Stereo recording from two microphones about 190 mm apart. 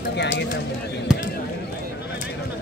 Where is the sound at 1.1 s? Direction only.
5° right (ahead or behind).